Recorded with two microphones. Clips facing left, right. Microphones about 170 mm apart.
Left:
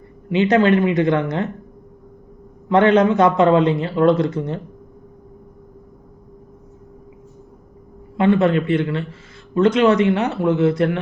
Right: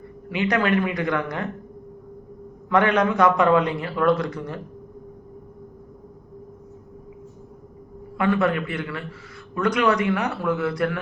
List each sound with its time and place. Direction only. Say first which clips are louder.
0.3 s a man's voice: left 7 dB; 25° left (ahead or behind)
2.6 s a man's voice: left 6 dB; 25° left (ahead or behind)
8.1 s a man's voice: left 6 dB; 25° left (ahead or behind)